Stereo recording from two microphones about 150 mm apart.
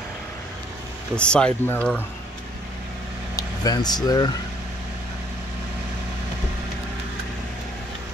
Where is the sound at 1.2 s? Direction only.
5° left (ahead or behind).